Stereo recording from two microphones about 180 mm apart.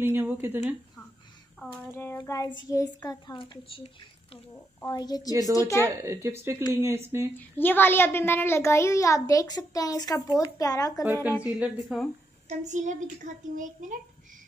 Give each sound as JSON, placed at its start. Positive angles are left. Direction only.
{"t": 0.0, "sound": "speech", "side_deg": -15}
{"t": 1.8, "sound": "a child's voice", "side_deg": 10}
{"t": 4.7, "sound": "a child's voice", "side_deg": 20}
{"t": 5.9, "sound": "speech", "side_deg": -15}
{"t": 7.3, "sound": "a child's voice", "side_deg": 10}
{"t": 11.4, "sound": "a woman's voice", "side_deg": -5}
{"t": 12.4, "sound": "a child's voice", "side_deg": -40}